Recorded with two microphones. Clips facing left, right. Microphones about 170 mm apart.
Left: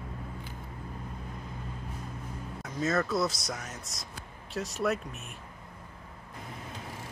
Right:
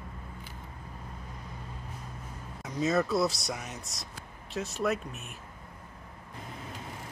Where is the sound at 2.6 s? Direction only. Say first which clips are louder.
Right 2 dB; 15° right (ahead or behind).